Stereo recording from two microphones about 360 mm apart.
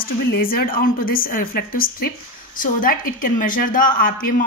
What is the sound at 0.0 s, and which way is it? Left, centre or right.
A woman's voice, left.